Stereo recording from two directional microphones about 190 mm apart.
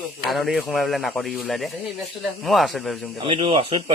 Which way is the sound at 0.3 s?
Centre (ahead or behind).